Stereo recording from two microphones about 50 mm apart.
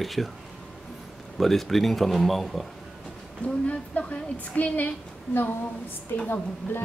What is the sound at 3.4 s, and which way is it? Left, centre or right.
Speech, left.